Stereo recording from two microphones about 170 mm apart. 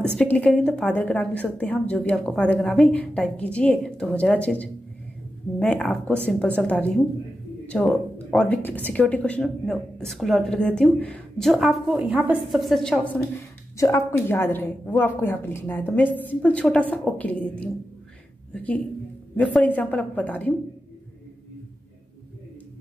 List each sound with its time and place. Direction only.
0.1 s a woman's voice: 5° left (ahead or behind)
13.7 s a woman's voice: 15° left (ahead or behind)